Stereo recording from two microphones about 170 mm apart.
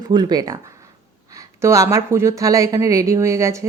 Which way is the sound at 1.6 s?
15° right (ahead or behind).